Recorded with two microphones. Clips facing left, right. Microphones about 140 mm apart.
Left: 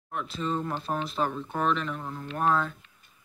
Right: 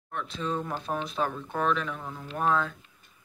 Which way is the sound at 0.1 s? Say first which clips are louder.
Left 1 dB; 5° left (ahead or behind).